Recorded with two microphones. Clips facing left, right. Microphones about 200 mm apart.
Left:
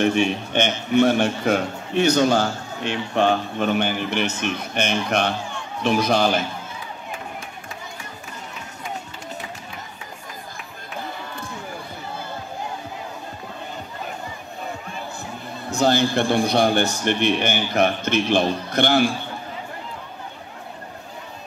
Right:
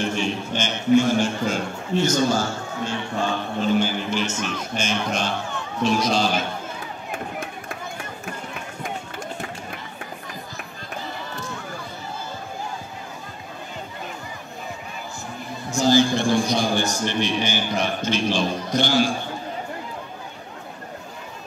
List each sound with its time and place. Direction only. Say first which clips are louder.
0.0 s a man's voice: left 5 dB; 60° left (ahead or behind)
15.7 s a man's voice: right 1 dB; 60° left (ahead or behind)